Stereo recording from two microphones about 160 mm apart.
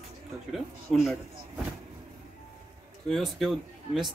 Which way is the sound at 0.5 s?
Centre (ahead or behind).